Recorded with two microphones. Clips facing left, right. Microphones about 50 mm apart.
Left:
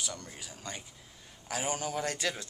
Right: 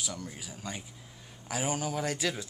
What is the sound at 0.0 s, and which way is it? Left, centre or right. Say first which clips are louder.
A man's voice: right 2 dB; centre.